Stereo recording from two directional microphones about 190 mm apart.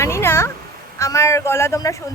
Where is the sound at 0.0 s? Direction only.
15° left (ahead or behind).